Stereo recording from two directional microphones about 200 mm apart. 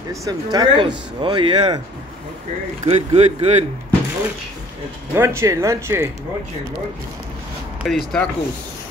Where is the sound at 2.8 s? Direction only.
30° right (ahead or behind).